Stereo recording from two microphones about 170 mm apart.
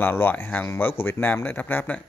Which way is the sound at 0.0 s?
10° left (ahead or behind).